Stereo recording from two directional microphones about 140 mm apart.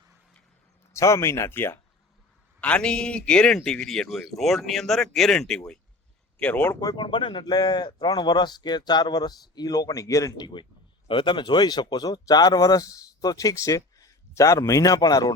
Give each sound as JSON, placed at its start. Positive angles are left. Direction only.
{"t": 0.9, "sound": "a man's voice", "side_deg": 20}
{"t": 6.7, "sound": "speech", "side_deg": 30}